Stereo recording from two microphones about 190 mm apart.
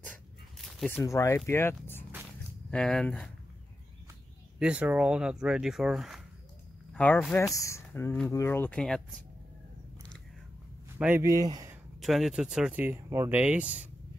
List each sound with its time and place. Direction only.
0.7 s zipper: centre (ahead or behind)
0.9 s speech: 15° left (ahead or behind)
4.6 s speech: 5° right (ahead or behind)
11.0 s speech: 10° right (ahead or behind)
11.7 s speech: centre (ahead or behind)